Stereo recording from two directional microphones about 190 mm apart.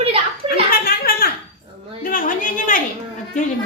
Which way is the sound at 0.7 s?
50° left (ahead or behind).